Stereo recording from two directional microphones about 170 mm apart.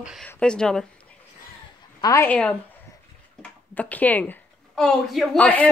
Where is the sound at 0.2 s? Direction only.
5° left (ahead or behind).